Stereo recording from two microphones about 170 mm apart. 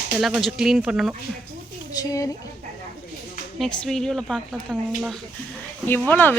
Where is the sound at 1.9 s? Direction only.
20° left (ahead or behind).